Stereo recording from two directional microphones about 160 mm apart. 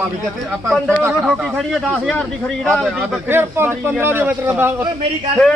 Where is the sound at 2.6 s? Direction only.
5° left (ahead or behind).